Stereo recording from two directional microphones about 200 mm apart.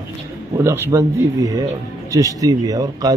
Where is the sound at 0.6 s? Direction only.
10° right (ahead or behind).